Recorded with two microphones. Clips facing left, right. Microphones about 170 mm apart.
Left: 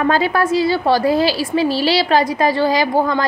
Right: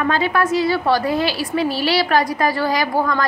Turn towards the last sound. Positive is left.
turn(degrees=25)  # may be behind; listen again after turning